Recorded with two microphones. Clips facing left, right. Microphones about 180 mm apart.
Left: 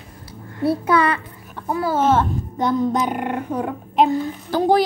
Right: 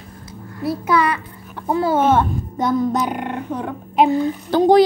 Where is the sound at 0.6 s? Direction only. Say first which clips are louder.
Left 1 dB; 30° left (ahead or behind).